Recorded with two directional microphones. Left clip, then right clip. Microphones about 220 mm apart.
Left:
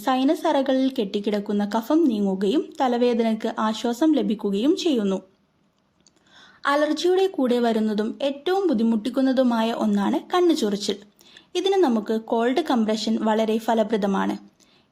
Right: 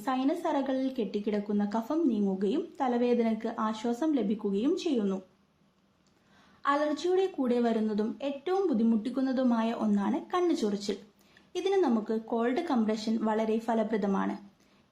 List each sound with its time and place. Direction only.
0.0 s speech: 40° left (ahead or behind)
6.6 s speech: 40° left (ahead or behind)